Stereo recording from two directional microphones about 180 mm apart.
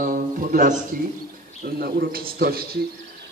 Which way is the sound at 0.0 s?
50° right (ahead or behind).